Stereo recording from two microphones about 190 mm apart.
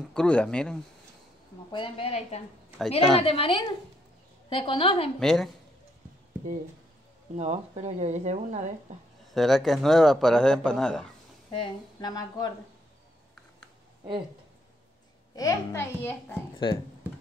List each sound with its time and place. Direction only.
0.1 s speech: 5° left (ahead or behind)
1.7 s speech: 25° left (ahead or behind)
5.2 s speech: centre (ahead or behind)
7.3 s speech: 35° right (ahead or behind)
9.3 s speech: centre (ahead or behind)
11.5 s speech: 25° left (ahead or behind)
15.3 s a child's voice: 15° left (ahead or behind)
16.5 s speech: 25° left (ahead or behind)